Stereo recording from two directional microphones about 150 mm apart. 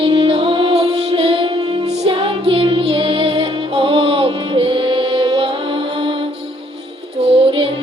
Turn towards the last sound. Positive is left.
turn(degrees=-40)  # may be behind; listen again after turning